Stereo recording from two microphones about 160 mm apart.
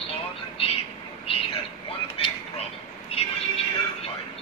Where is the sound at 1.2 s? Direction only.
35° left (ahead or behind).